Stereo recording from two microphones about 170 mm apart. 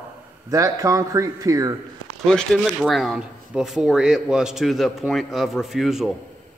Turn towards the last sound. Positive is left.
turn(degrees=0)  # may be behind; listen again after turning